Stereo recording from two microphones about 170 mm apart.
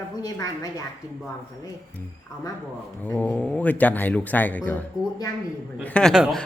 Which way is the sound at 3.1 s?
10° left (ahead or behind).